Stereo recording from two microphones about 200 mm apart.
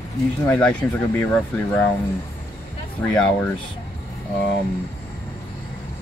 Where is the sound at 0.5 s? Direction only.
5° left (ahead or behind).